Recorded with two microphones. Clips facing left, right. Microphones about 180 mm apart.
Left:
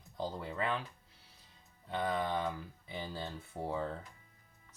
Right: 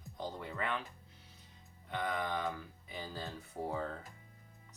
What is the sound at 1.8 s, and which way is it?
Speech, 30° left (ahead or behind).